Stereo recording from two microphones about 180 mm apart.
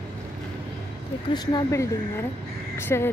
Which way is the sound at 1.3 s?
20° left (ahead or behind).